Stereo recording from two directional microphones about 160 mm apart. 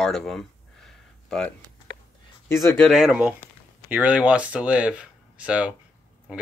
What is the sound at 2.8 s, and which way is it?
Speech, centre (ahead or behind).